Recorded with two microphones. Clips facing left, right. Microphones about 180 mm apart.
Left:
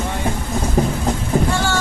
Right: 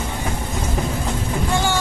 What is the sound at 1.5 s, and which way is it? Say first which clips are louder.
Boat: even; 15° right (ahead or behind).